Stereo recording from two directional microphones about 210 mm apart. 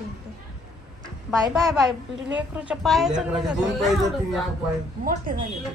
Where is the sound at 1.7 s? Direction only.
5° right (ahead or behind).